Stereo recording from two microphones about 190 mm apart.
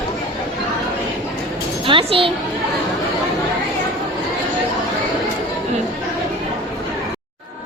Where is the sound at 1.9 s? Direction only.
30° right (ahead or behind).